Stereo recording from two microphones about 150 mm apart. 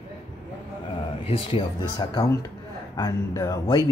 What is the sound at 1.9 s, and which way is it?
Speech, 25° left (ahead or behind).